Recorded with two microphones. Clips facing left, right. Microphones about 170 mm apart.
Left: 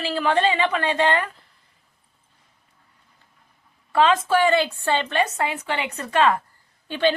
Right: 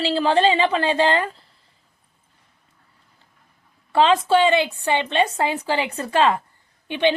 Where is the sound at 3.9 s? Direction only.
30° right (ahead or behind).